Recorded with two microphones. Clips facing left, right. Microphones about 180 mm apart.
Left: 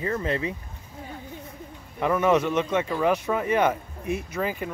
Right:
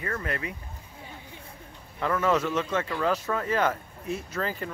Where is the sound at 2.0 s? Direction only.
15° left (ahead or behind).